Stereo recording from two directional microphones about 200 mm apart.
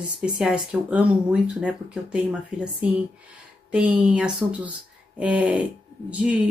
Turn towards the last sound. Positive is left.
turn(degrees=-5)  # may be behind; listen again after turning